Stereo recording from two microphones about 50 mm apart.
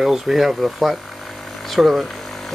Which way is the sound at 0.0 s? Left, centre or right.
Centre.